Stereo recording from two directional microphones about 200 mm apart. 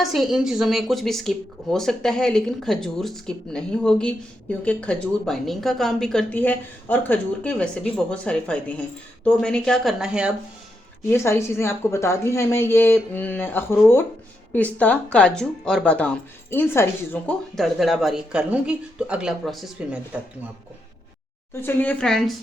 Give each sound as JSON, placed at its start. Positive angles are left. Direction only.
{"t": 0.0, "sound": "a woman's voice", "side_deg": 0}
{"t": 11.1, "sound": "a woman's voice", "side_deg": 15}
{"t": 21.5, "sound": "a woman's voice", "side_deg": 10}